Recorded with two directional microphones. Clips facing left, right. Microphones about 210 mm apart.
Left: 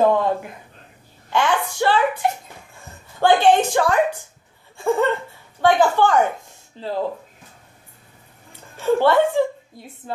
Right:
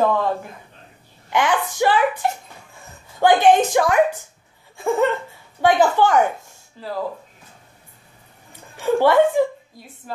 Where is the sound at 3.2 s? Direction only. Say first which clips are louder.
Right 1 dB; 15° right (ahead or behind).